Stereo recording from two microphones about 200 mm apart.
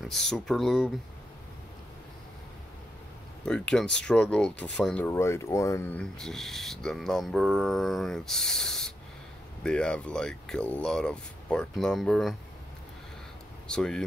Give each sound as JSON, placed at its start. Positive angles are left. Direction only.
{"t": 0.0, "sound": "speech", "side_deg": 0}
{"t": 3.4, "sound": "speech", "side_deg": 5}
{"t": 13.7, "sound": "speech", "side_deg": 5}